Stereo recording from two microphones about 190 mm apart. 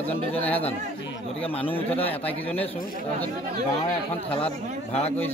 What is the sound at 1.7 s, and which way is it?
Speech, 10° left (ahead or behind).